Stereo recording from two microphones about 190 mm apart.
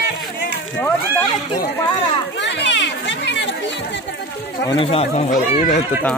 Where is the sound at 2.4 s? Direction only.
65° left (ahead or behind).